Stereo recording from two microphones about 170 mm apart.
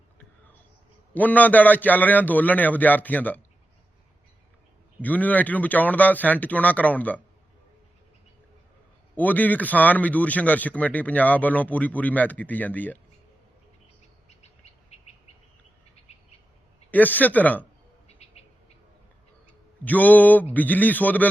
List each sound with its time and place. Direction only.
1.1 s speech: 10° left (ahead or behind)
4.9 s speech: 10° left (ahead or behind)
9.1 s speech: 10° left (ahead or behind)
14.3 s bird: 40° left (ahead or behind)
16.9 s speech: 10° left (ahead or behind)
19.8 s speech: 10° left (ahead or behind)